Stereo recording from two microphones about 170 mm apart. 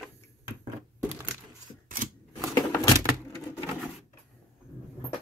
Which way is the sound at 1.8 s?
55° right (ahead or behind).